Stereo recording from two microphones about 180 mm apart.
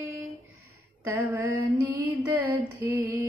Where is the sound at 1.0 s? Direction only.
10° right (ahead or behind).